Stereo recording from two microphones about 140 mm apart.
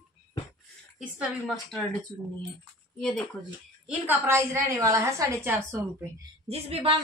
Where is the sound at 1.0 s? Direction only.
5° right (ahead or behind).